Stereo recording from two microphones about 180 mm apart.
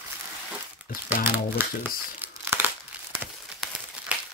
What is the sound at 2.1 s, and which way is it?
Crumpling, 10° right (ahead or behind).